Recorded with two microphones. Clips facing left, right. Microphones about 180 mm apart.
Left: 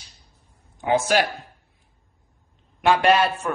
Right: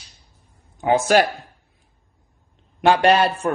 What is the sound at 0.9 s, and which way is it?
Speech, 45° right (ahead or behind).